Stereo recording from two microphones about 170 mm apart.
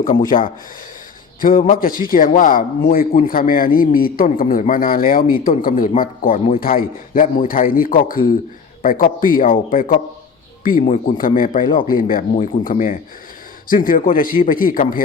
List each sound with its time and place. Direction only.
0.0 s a man's voice: 50° left (ahead or behind)